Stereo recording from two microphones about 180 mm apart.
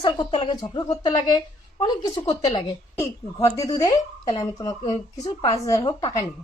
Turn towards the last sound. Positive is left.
turn(degrees=30)  # may be behind; listen again after turning